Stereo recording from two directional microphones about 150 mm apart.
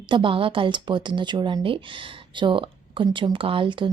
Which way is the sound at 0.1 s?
35° right (ahead or behind).